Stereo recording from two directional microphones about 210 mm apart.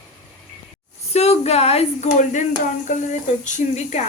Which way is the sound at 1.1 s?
30° left (ahead or behind).